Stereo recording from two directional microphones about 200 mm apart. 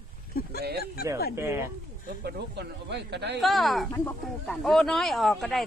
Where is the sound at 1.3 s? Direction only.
15° right (ahead or behind).